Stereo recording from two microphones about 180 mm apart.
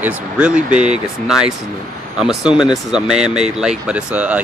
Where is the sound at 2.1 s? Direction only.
5° right (ahead or behind).